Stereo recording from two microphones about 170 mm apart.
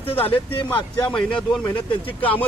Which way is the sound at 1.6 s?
30° left (ahead or behind).